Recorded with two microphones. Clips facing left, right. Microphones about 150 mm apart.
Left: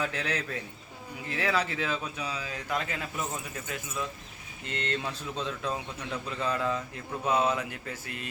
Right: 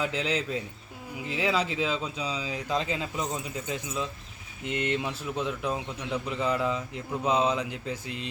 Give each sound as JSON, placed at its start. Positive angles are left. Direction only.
{"t": 0.0, "sound": "a man's voice", "side_deg": -15}